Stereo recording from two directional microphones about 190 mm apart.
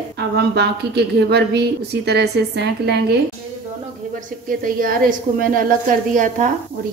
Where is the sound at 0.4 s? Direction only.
60° right (ahead or behind).